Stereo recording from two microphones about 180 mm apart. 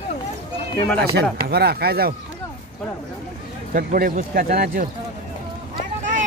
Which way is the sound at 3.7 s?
50° right (ahead or behind).